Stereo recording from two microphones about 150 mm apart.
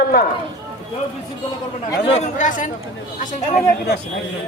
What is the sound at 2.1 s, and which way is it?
Speech, 50° left (ahead or behind).